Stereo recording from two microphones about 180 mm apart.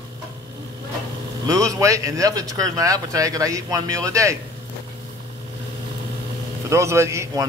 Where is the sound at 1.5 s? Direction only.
20° right (ahead or behind).